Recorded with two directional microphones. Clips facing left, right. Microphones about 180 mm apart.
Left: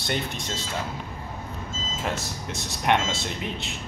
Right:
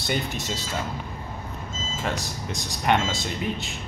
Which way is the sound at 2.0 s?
Centre (ahead or behind).